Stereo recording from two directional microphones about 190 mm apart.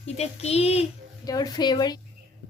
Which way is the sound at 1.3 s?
20° left (ahead or behind).